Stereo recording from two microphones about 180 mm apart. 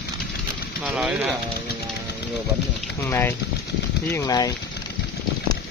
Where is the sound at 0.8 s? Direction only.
5° right (ahead or behind).